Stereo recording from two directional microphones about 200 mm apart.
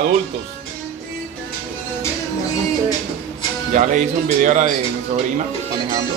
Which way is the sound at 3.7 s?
40° right (ahead or behind).